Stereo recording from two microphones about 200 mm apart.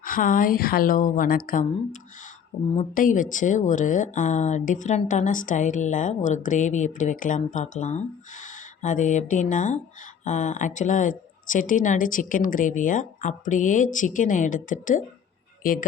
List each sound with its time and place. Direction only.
0.0 s a woman's voice: 45° left (ahead or behind)